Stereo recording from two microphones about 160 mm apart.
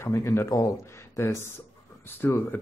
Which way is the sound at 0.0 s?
15° left (ahead or behind).